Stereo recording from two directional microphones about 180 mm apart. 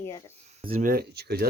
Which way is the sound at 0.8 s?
55° right (ahead or behind).